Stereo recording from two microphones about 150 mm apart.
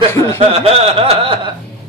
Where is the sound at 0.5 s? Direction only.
40° right (ahead or behind).